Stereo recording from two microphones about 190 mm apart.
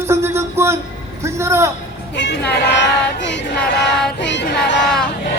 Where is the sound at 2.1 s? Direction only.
65° left (ahead or behind).